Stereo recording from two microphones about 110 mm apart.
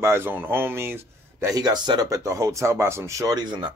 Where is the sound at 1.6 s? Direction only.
40° right (ahead or behind).